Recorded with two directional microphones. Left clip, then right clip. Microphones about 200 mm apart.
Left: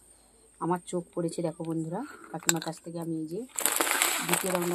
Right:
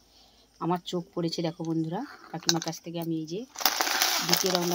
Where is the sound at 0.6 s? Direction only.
40° right (ahead or behind).